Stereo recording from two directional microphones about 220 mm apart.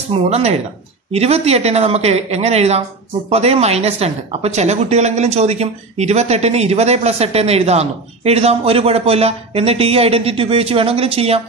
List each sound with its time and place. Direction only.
0.1 s a woman's voice: 30° right (ahead or behind)